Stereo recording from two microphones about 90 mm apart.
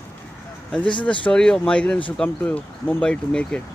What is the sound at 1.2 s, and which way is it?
Speech, 10° left (ahead or behind).